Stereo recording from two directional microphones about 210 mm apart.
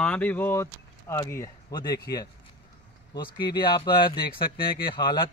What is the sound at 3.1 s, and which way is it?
Speech, 20° left (ahead or behind).